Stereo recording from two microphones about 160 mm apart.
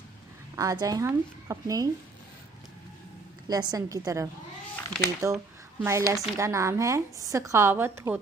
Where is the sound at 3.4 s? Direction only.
25° right (ahead or behind).